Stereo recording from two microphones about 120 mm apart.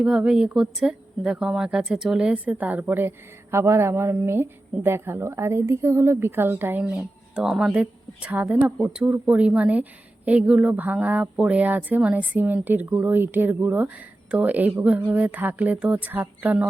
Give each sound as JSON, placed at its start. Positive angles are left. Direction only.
{"t": 0.0, "sound": "speech", "side_deg": -5}
{"t": 6.8, "sound": "speech", "side_deg": -5}